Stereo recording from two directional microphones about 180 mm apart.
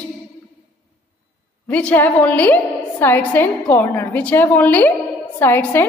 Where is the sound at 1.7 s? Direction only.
5° left (ahead or behind).